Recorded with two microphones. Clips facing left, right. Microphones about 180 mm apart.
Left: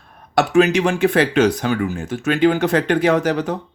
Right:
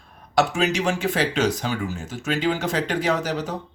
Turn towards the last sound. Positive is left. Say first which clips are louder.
# left 7 dB
turn(degrees=60)  # may be behind; listen again after turning